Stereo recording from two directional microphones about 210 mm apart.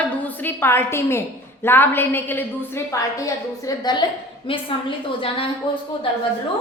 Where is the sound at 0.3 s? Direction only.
10° left (ahead or behind); by 5.5 s 25° left (ahead or behind).